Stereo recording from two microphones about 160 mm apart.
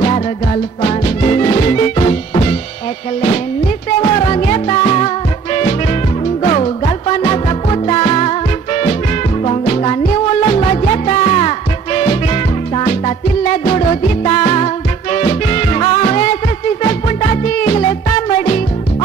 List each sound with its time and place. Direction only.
0.8 s music: 35° left (ahead or behind)
4.0 s music: 35° left (ahead or behind)